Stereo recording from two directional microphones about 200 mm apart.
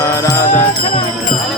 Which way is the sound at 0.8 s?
30° left (ahead or behind).